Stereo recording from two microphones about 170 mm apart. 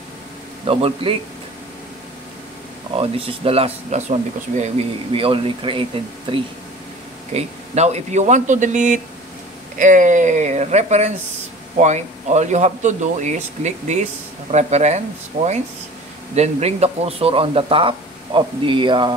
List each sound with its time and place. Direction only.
0.7 s speech: 35° right (ahead or behind)
3.0 s speech: 35° right (ahead or behind)
7.3 s speech: 40° right (ahead or behind)